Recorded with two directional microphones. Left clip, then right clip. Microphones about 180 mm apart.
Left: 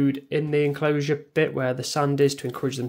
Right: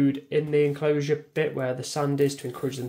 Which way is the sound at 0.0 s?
25° left (ahead or behind).